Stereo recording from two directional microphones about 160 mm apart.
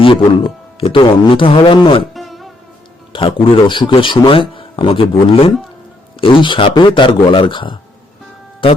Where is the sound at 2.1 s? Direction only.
Centre (ahead or behind).